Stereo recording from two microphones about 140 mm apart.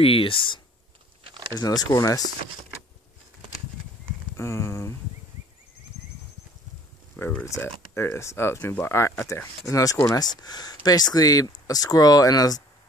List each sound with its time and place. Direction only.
0.0 s speech: 40° left (ahead or behind)
1.2 s a sound: 35° right (ahead or behind)
1.5 s speech: 25° left (ahead or behind)
4.4 s speech: 20° left (ahead or behind)
7.2 s speech: 15° left (ahead or behind)